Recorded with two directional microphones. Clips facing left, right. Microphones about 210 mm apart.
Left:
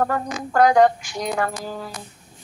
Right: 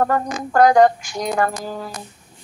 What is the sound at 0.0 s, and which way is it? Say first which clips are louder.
Music: right 3 dB; 45° right (ahead or behind).